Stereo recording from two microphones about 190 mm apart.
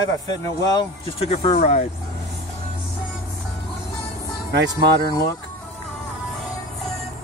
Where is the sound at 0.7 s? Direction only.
30° left (ahead or behind).